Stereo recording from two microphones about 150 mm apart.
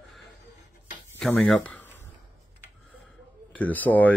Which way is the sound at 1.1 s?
5° left (ahead or behind).